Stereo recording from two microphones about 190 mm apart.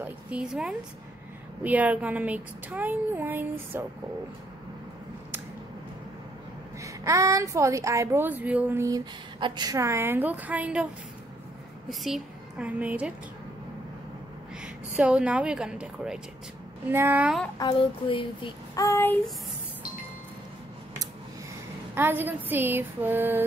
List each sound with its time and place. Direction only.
0.0 s a sound: 5° right (ahead or behind)
1.6 s a woman's voice: 10° right (ahead or behind)
6.8 s a woman's voice: 15° right (ahead or behind)
11.9 s a woman's voice: centre (ahead or behind)
14.6 s a woman's voice: 5° right (ahead or behind)
17.6 s child singing: 25° left (ahead or behind)
18.9 s child singing: 10° left (ahead or behind)
21.9 s a woman's voice: 10° right (ahead or behind)